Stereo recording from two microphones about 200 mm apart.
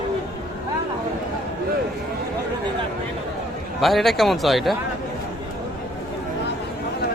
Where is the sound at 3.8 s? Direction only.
Centre (ahead or behind).